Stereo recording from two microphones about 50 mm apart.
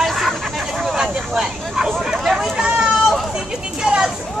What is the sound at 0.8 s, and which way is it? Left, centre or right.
Vehicle, centre.